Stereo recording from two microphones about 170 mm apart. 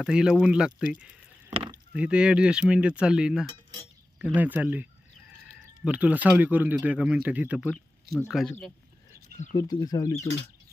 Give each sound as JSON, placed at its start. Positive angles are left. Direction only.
{"t": 0.0, "sound": "speech", "side_deg": -5}
{"t": 1.5, "sound": "a sound", "side_deg": -35}
{"t": 2.0, "sound": "speech", "side_deg": -5}
{"t": 5.9, "sound": "speech", "side_deg": -10}
{"t": 9.6, "sound": "speech", "side_deg": 20}